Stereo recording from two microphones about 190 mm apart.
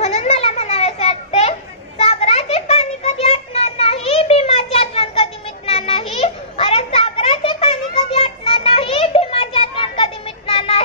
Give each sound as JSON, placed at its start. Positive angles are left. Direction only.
{"t": 0.0, "sound": "children playing", "side_deg": 35}